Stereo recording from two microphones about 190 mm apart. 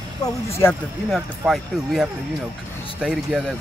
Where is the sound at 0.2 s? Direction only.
20° left (ahead or behind).